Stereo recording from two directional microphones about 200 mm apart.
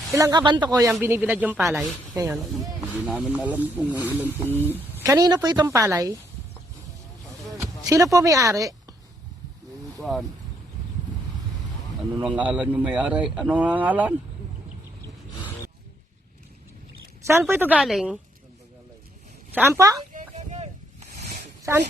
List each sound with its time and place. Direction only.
0.1 s speech: 15° right (ahead or behind)
3.1 s speech: 5° right (ahead or behind)
7.6 s speech: 15° right (ahead or behind)
10.0 s speech: centre (ahead or behind)
12.4 s speech: 5° right (ahead or behind)
17.5 s speech: 10° right (ahead or behind)
19.5 s speech: 10° right (ahead or behind)
20.1 s a sound: 35° right (ahead or behind)
21.6 s speech: 15° right (ahead or behind)